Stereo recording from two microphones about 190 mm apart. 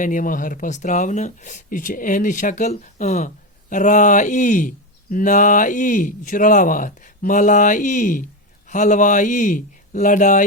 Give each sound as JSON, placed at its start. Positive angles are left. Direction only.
{"t": 0.0, "sound": "speech", "side_deg": 45}